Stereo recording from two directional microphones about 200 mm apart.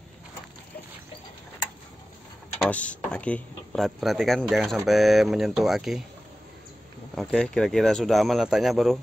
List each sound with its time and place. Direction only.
2.6 s speech: 5° left (ahead or behind)
7.2 s speech: centre (ahead or behind)